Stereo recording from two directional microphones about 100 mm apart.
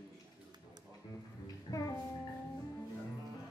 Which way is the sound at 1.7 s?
40° left (ahead or behind).